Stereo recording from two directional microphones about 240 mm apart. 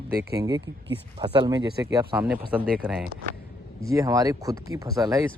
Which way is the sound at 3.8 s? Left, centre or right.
Centre.